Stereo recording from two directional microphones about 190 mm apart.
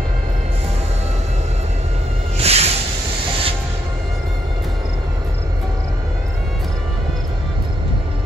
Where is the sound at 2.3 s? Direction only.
35° right (ahead or behind).